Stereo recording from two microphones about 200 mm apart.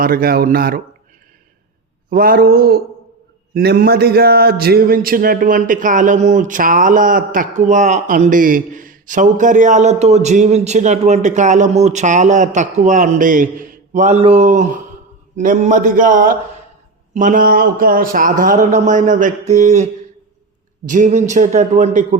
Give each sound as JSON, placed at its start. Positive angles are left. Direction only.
{"t": 0.0, "sound": "speech", "side_deg": -50}
{"t": 2.0, "sound": "a man's voice", "side_deg": -45}